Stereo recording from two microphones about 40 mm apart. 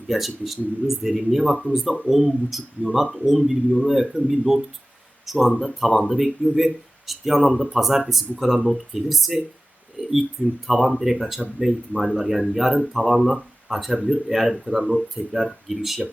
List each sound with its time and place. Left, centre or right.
0.1 s speech: centre
10.0 s a sound: centre
10.7 s speech: centre
11.6 s speech: right
12.1 s speech: centre